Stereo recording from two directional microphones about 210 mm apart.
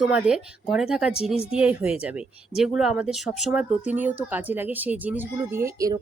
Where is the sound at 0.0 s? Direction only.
5° right (ahead or behind).